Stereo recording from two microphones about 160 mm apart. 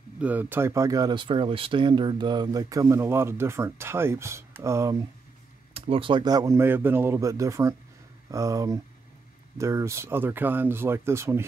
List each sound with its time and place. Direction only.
0.2 s speech: 10° right (ahead or behind)
5.8 s speech: 35° right (ahead or behind); by 11.4 s 15° right (ahead or behind)